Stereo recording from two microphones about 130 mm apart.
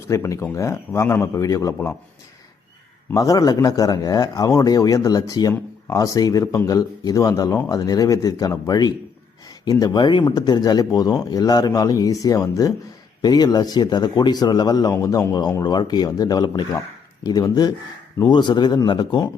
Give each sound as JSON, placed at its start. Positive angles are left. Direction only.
{"t": 0.1, "sound": "speech", "side_deg": 25}
{"t": 3.1, "sound": "speech", "side_deg": 25}